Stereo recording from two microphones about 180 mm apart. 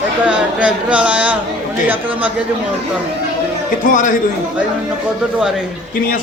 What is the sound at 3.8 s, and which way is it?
Speech, 45° left (ahead or behind).